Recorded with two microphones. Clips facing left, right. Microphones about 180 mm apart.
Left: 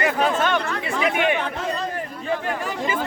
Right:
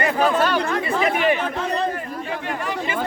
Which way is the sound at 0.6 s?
45° right (ahead or behind).